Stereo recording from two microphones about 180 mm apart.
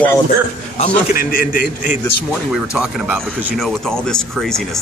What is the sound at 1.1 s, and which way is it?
Speech, 55° left (ahead or behind).